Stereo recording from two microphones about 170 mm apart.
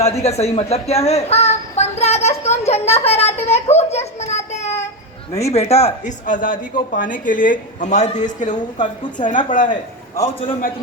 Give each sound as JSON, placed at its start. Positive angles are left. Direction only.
{"t": 0.0, "sound": "a woman's voice", "side_deg": 40}